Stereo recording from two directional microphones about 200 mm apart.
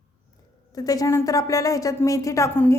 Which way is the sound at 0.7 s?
15° left (ahead or behind).